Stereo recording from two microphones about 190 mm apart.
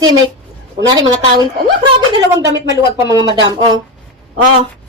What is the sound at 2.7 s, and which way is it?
Speech, 20° right (ahead or behind).